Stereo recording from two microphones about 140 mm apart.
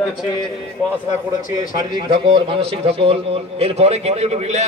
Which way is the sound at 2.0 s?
35° right (ahead or behind).